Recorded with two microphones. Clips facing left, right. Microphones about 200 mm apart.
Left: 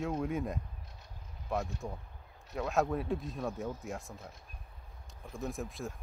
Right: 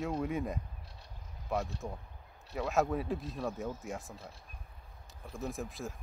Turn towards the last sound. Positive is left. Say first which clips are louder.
# even
turn(degrees=0)  # may be behind; listen again after turning